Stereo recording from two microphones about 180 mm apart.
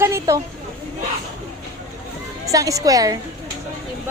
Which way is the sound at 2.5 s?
20° right (ahead or behind).